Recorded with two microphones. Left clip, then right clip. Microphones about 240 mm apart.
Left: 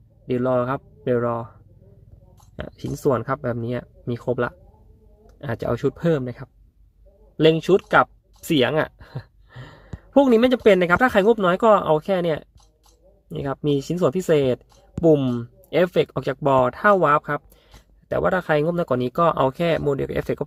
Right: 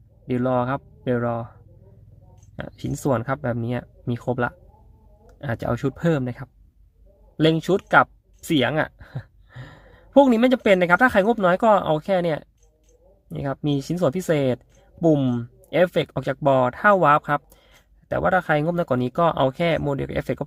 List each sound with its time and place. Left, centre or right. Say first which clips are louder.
0.3 s speech: left 1 dB; centre
2.6 s speech: even; centre